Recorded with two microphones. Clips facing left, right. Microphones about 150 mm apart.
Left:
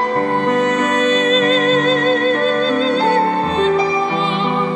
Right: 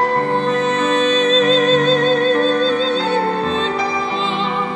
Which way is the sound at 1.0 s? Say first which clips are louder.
Even; 30° right (ahead or behind).